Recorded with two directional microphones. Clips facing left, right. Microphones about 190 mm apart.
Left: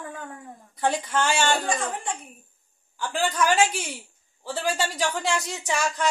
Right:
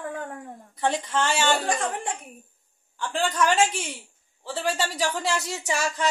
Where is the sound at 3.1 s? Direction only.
5° left (ahead or behind).